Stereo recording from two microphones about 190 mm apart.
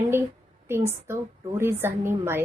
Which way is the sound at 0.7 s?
10° right (ahead or behind).